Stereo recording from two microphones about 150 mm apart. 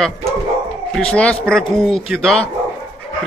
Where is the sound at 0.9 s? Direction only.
5° left (ahead or behind).